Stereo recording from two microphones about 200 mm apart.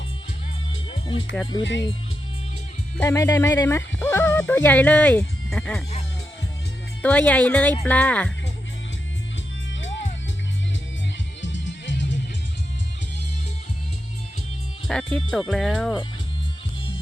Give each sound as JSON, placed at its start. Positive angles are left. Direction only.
{"t": 0.9, "sound": "music", "side_deg": 25}
{"t": 1.6, "sound": "speech", "side_deg": 65}
{"t": 3.0, "sound": "speech", "side_deg": 15}
{"t": 7.0, "sound": "speech", "side_deg": 5}
{"t": 11.4, "sound": "music", "side_deg": 65}
{"t": 14.8, "sound": "speech", "side_deg": 5}